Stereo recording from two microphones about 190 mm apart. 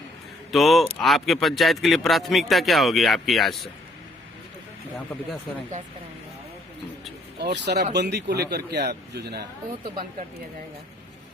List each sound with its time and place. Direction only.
0.5 s speech: centre (ahead or behind)
7.3 s a man's voice: 65° right (ahead or behind)